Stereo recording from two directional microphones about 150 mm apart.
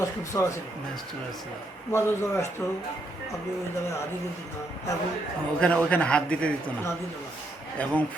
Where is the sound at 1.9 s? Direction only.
15° left (ahead or behind).